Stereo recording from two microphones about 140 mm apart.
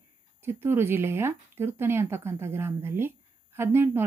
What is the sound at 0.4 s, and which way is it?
A woman's voice, 15° right (ahead or behind).